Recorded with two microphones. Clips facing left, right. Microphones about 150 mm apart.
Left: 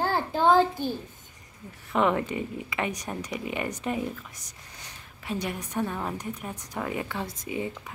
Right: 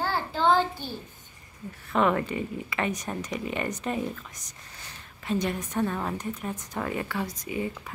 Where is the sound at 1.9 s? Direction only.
15° left (ahead or behind).